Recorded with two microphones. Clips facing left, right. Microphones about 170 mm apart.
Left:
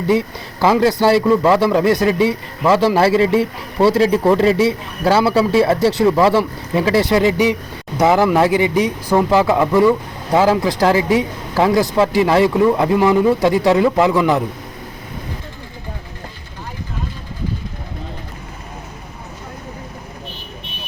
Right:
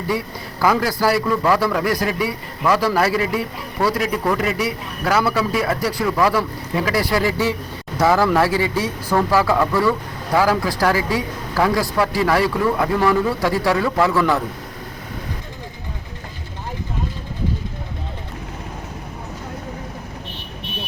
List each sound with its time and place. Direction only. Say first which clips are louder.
0.1 s a man's voice: left 8 dB; 25° left (ahead or behind)